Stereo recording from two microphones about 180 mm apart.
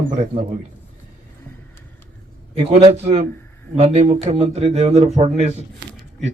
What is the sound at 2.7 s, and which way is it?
Speech, 35° right (ahead or behind).